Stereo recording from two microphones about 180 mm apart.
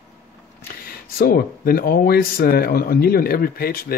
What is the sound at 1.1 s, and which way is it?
A man's voice, 55° left (ahead or behind).